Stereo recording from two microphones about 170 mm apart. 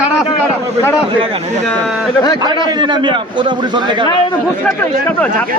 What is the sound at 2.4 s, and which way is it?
A man's voice, 25° right (ahead or behind).